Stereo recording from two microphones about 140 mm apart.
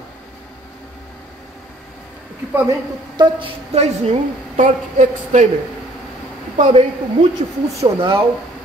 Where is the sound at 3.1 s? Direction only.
45° right (ahead or behind).